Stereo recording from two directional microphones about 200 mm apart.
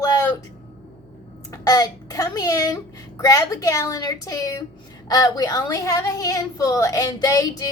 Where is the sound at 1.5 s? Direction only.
20° left (ahead or behind).